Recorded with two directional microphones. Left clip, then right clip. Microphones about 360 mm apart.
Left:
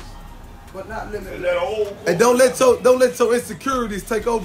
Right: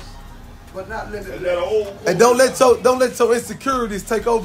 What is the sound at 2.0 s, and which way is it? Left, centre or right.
A man's voice, centre.